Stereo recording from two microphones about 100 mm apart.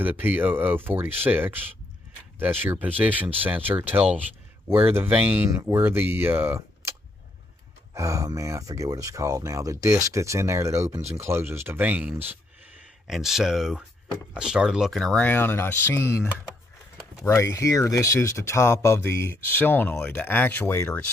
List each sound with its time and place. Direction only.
0.0 s speech: 15° right (ahead or behind)
13.0 s speech: 5° right (ahead or behind)
15.0 s speech: 5° left (ahead or behind)
15.2 s speech: 20° left (ahead or behind)
17.3 s speech: 30° left (ahead or behind)